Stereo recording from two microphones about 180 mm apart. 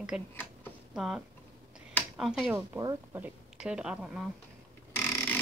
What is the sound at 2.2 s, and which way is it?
Speech, 5° right (ahead or behind).